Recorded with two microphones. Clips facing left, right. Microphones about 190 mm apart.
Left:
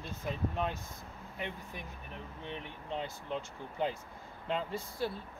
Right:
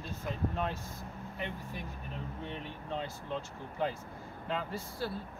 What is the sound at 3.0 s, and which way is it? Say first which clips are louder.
Speech: even; 15° left (ahead or behind).